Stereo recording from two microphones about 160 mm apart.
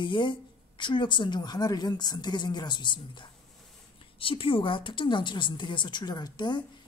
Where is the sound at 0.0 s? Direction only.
30° left (ahead or behind).